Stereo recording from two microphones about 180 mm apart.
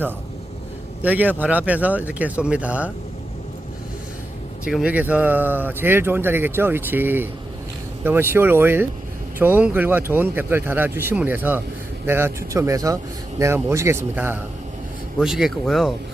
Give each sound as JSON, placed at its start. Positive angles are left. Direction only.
{"t": 1.0, "sound": "speech", "side_deg": -10}
{"t": 4.6, "sound": "speech", "side_deg": -5}
{"t": 15.2, "sound": "speech", "side_deg": 0}